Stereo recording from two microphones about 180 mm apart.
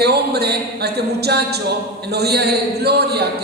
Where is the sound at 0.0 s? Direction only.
65° right (ahead or behind).